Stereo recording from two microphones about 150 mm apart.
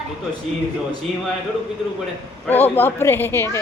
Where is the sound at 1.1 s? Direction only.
Centre (ahead or behind).